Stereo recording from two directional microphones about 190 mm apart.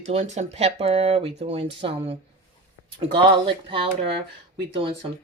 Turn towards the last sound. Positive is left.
turn(degrees=-30)  # may be behind; listen again after turning